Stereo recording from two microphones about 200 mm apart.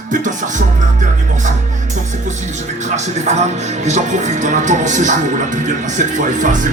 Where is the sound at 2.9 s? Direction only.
35° right (ahead or behind).